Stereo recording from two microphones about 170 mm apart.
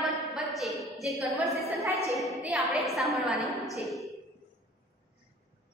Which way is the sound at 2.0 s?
20° left (ahead or behind).